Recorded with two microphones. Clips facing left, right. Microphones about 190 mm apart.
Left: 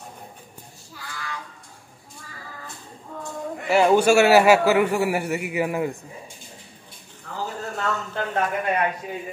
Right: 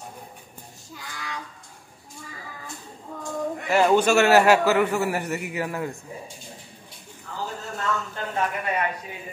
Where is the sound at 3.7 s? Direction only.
10° left (ahead or behind).